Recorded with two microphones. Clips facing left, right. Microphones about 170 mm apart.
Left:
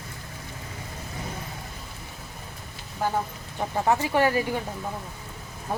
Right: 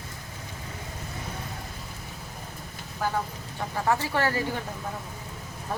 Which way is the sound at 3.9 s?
15° left (ahead or behind).